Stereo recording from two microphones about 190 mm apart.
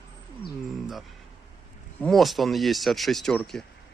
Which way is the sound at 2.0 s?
Centre (ahead or behind).